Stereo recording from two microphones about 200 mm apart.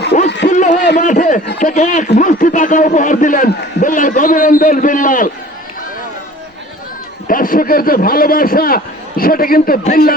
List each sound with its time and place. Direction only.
0.4 s a sound: 35° left (ahead or behind)
0.9 s a man's voice: 40° left (ahead or behind)
7.3 s a man's voice: 45° left (ahead or behind)